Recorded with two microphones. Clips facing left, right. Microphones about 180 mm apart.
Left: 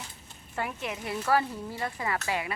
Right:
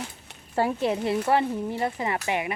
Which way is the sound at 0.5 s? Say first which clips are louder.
Right 10 dB; 30° right (ahead or behind).